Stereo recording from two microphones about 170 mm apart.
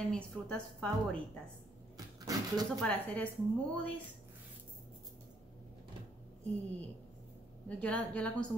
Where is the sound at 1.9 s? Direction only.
20° right (ahead or behind).